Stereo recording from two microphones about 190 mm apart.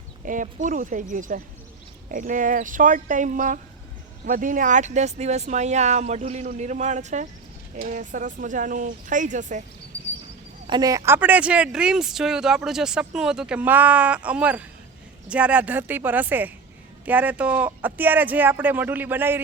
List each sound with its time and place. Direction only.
0.3 s speech: 45° right (ahead or behind)
10.7 s speech: 20° right (ahead or behind)